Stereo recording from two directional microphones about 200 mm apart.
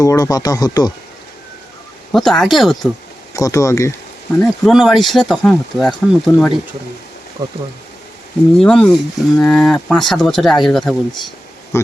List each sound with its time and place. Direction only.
0.0 s speech: 15° left (ahead or behind)
2.1 s speech: centre (ahead or behind)
3.3 s speech: 15° left (ahead or behind)
4.4 s speech: centre (ahead or behind)
7.4 s speech: 20° right (ahead or behind)
8.5 s speech: 5° left (ahead or behind)
11.7 s speech: 15° left (ahead or behind)